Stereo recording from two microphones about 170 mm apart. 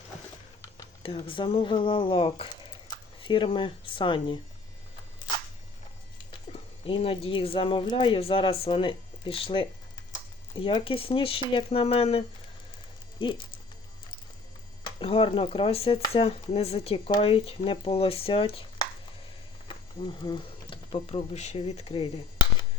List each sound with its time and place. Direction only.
1.0 s speech: 30° left (ahead or behind)
6.5 s a sound: 35° left (ahead or behind)
6.8 s speech: 30° left (ahead or behind)
14.8 s speech: 30° left (ahead or behind)